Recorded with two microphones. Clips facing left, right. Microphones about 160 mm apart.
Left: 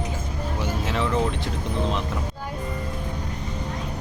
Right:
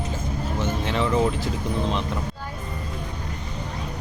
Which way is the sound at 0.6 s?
5° left (ahead or behind).